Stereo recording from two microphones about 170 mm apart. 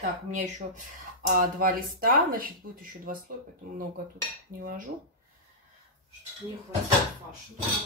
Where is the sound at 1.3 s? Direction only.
60° right (ahead or behind).